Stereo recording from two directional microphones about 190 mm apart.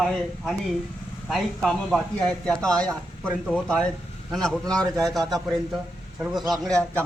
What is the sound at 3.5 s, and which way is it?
A man's voice, 5° left (ahead or behind).